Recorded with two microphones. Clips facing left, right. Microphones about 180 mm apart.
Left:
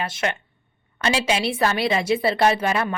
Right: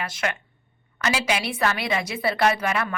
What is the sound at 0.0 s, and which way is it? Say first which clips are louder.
A woman's voice: left 3 dB; 25° left (ahead or behind).